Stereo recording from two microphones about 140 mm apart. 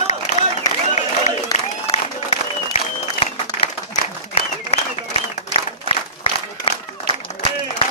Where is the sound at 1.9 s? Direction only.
50° left (ahead or behind).